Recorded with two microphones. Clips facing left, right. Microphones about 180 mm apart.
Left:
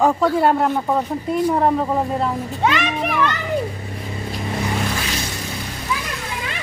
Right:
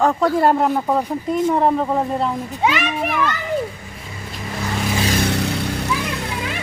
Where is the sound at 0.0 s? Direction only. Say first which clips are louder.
Even; 5° left (ahead or behind).